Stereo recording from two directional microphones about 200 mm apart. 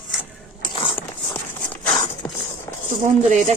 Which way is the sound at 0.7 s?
25° left (ahead or behind).